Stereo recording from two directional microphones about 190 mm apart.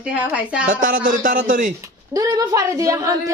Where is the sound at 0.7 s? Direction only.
45° right (ahead or behind).